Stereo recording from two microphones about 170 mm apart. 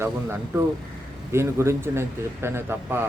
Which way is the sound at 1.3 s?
15° right (ahead or behind).